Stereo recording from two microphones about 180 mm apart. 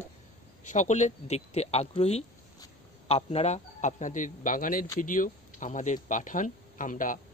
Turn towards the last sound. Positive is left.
turn(degrees=45)  # may be behind; listen again after turning